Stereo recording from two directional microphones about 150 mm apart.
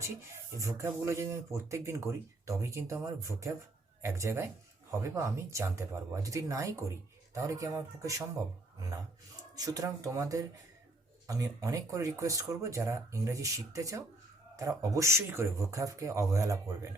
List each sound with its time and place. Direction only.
0.6 s speech: 20° right (ahead or behind)
9.6 s speech: 25° right (ahead or behind)